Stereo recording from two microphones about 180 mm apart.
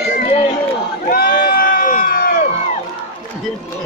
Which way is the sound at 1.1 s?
55° left (ahead or behind).